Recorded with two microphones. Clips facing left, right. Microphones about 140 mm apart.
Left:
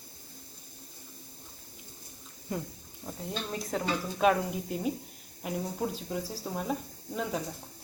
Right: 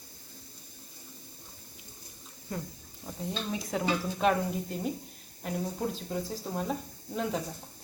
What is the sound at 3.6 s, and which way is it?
A woman's voice, centre (ahead or behind).